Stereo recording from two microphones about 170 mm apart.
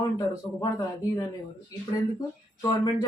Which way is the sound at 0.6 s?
20° left (ahead or behind).